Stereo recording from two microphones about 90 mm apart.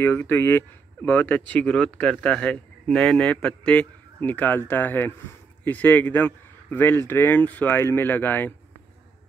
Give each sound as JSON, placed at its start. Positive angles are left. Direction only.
{"t": 0.0, "sound": "a man's voice", "side_deg": 25}